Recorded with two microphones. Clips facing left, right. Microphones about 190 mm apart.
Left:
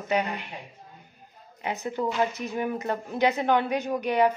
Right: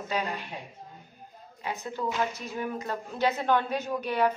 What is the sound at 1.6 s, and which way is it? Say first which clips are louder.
A woman's voice: left 4 dB; 20° left (ahead or behind).